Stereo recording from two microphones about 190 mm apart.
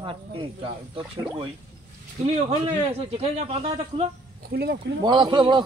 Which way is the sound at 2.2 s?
35° right (ahead or behind).